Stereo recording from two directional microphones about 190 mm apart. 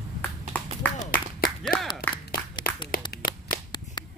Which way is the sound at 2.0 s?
45° left (ahead or behind).